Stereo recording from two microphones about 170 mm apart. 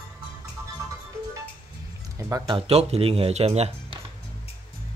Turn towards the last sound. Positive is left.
turn(degrees=-35)  # may be behind; listen again after turning